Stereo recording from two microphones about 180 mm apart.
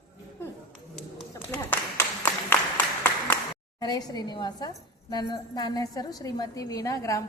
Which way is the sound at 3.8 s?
20° left (ahead or behind).